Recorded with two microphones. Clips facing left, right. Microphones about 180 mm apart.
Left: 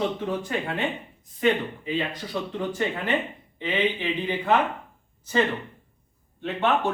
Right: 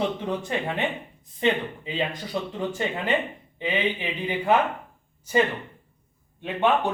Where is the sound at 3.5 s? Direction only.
15° right (ahead or behind).